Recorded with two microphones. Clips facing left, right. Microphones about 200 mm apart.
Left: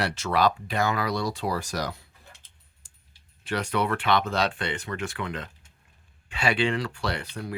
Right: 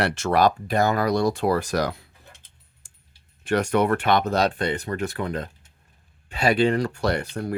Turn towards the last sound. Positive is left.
turn(degrees=-45)  # may be behind; listen again after turning